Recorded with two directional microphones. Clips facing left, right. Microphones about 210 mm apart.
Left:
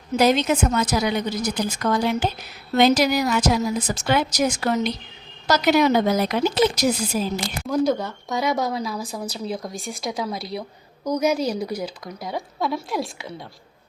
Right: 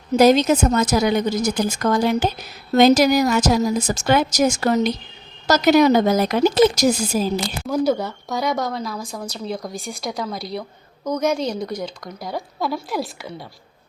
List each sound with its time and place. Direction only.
0.1 s a woman's voice: 40° right (ahead or behind)
7.6 s a woman's voice: 5° right (ahead or behind)